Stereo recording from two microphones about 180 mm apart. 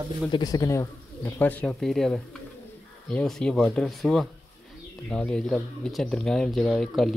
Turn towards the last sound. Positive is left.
turn(degrees=0)  # may be behind; listen again after turning